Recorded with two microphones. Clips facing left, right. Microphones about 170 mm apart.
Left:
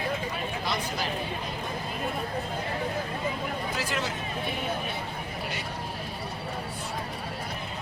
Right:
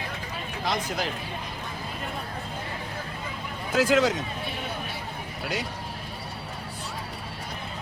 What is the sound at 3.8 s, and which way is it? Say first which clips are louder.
Speech: right 16 dB; 90° right.